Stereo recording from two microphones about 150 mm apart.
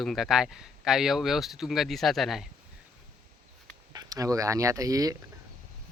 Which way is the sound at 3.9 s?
25° right (ahead or behind).